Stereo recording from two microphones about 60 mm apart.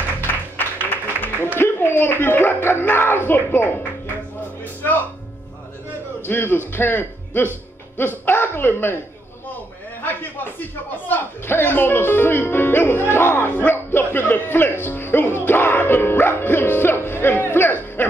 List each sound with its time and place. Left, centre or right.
0.6 s a sound: left
2.8 s speech: left
6.2 s a man's voice: left
11.1 s speech: left